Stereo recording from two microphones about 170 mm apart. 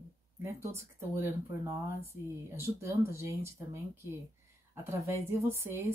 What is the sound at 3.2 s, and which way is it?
Speech, 15° right (ahead or behind).